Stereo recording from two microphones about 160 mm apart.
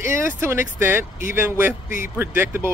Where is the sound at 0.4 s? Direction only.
15° right (ahead or behind).